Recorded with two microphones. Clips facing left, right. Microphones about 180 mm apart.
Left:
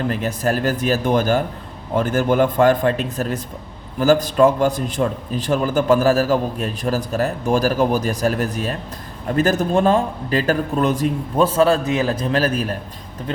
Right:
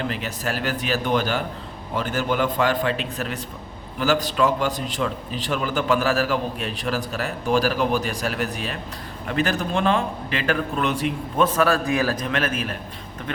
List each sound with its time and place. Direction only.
0.1 s a man's voice: 45° left (ahead or behind)
11.4 s a man's voice: 25° left (ahead or behind)